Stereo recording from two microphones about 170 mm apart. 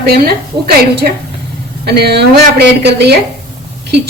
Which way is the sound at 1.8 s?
70° right (ahead or behind).